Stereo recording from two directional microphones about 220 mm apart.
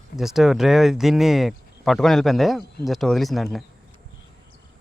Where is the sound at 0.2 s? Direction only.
Centre (ahead or behind).